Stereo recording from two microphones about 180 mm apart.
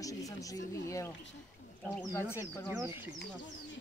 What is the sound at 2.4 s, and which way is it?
Speech, 5° right (ahead or behind).